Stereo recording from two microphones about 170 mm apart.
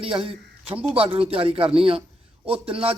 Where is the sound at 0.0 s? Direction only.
35° right (ahead or behind).